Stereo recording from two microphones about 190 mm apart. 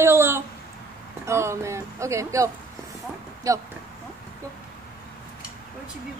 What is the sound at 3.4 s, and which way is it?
Speech, 20° right (ahead or behind).